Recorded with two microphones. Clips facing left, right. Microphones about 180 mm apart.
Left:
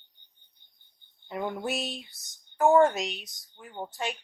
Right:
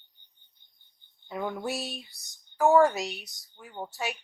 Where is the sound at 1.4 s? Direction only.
Centre (ahead or behind).